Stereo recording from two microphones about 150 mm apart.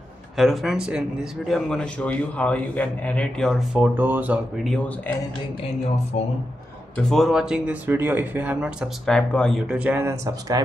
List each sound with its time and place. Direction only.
0.4 s a man's voice: centre (ahead or behind)
1.5 s a man's voice: 5° left (ahead or behind); by 4.4 s 10° right (ahead or behind)
4.6 s speech: 10° left (ahead or behind)
6.1 s speech: 55° left (ahead or behind)
7.0 s speech: centre (ahead or behind); by 10.6 s 20° right (ahead or behind)